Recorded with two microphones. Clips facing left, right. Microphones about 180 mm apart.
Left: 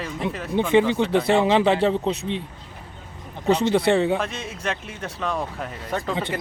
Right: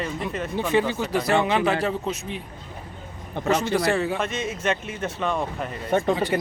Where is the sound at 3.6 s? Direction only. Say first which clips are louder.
Left 4 dB; 25° left (ahead or behind).